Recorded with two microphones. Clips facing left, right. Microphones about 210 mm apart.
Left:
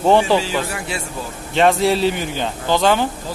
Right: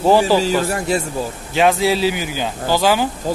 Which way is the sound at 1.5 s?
5° right (ahead or behind).